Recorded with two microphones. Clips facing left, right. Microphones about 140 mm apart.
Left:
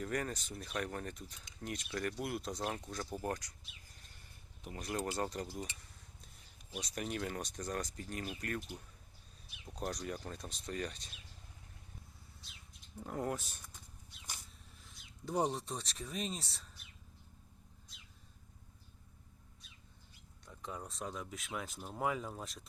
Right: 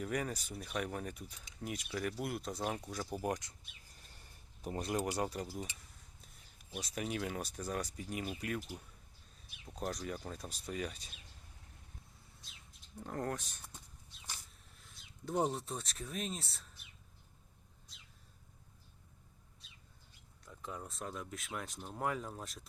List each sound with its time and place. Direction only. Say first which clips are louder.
0.0 s speech: right 1 dB; 10° right (ahead or behind)
4.6 s speech: right 7 dB; 35° right (ahead or behind)
4.9 s speech: right 1 dB; 15° right (ahead or behind)
13.0 s speech: left 1 dB; 5° left (ahead or behind)
14.8 s speech: right 1 dB; centre (ahead or behind)
20.4 s speech: even; centre (ahead or behind)